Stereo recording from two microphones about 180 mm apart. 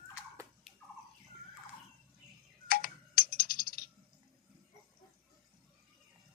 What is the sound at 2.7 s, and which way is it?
Coin, 50° left (ahead or behind).